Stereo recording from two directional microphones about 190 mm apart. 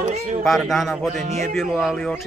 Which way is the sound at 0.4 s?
Centre (ahead or behind).